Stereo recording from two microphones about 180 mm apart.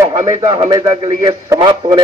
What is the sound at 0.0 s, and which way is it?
A man's voice, 15° right (ahead or behind).